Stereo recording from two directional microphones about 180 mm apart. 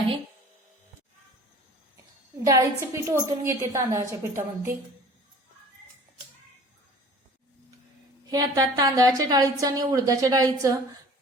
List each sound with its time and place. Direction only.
2.5 s a woman's voice: 15° right (ahead or behind)
8.3 s a woman's voice: 20° right (ahead or behind)